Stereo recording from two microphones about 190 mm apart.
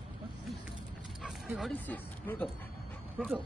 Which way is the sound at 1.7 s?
10° left (ahead or behind).